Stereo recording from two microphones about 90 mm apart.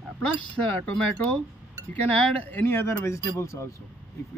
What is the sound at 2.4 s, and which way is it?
A man's voice, 20° left (ahead or behind).